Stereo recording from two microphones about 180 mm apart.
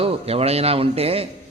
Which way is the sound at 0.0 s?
35° right (ahead or behind).